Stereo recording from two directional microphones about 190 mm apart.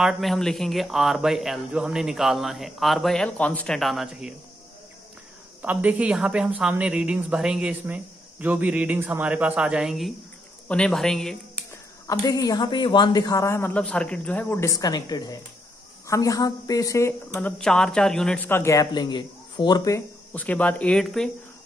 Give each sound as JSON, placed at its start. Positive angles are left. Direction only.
{"t": 0.0, "sound": "speech", "side_deg": 0}
{"t": 5.6, "sound": "speech", "side_deg": -10}
{"t": 11.7, "sound": "speech", "side_deg": 20}
{"t": 20.3, "sound": "speech", "side_deg": 10}